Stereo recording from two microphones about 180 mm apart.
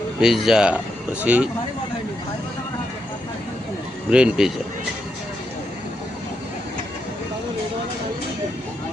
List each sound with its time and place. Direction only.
0.2 s speech: centre (ahead or behind)
4.1 s speech: 5° right (ahead or behind)